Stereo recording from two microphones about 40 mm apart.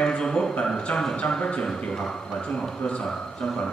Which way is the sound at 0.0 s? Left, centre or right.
Centre.